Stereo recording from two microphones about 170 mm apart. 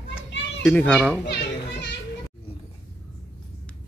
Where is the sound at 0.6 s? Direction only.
5° left (ahead or behind).